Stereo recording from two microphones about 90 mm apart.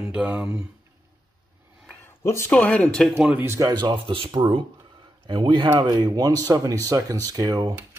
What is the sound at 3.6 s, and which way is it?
Speech, 55° right (ahead or behind).